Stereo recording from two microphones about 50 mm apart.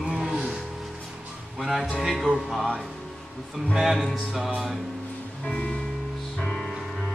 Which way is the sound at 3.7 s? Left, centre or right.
Centre.